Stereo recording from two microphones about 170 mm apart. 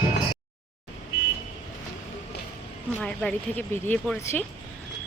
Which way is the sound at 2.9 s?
10° left (ahead or behind).